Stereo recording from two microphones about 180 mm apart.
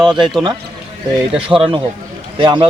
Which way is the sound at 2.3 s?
25° right (ahead or behind).